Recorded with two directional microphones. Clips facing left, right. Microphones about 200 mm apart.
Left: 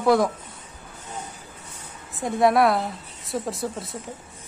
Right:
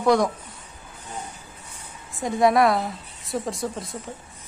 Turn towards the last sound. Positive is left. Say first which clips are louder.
# even
turn(degrees=0)  # may be behind; listen again after turning